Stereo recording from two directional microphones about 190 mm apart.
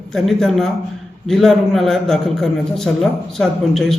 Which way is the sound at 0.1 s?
Centre (ahead or behind).